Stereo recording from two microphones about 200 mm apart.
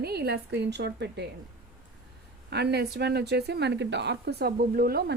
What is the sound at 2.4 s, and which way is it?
A woman's voice, 55° right (ahead or behind).